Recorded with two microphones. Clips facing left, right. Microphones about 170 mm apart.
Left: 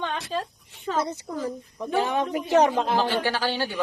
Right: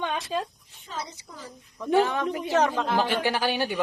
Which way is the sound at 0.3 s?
10° right (ahead or behind).